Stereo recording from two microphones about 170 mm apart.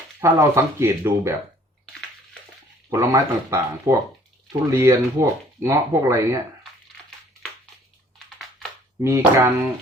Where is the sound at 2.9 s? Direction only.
20° right (ahead or behind).